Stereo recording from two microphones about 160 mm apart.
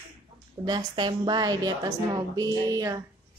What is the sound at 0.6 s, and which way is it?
A woman's voice, 25° right (ahead or behind).